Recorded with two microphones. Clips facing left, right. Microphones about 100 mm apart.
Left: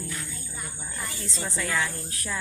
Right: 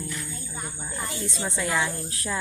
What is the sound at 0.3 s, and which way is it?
Music, 30° right (ahead or behind).